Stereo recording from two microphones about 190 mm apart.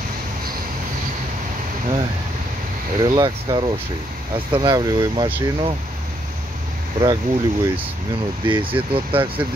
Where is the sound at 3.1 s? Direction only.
25° right (ahead or behind).